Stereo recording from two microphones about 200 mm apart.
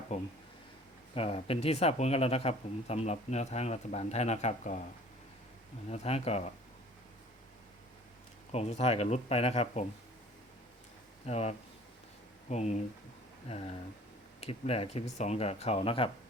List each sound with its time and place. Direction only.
0.1 s speech: 35° left (ahead or behind)
5.9 s speech: 30° left (ahead or behind)
8.5 s speech: 30° left (ahead or behind)
11.3 s speech: 30° left (ahead or behind)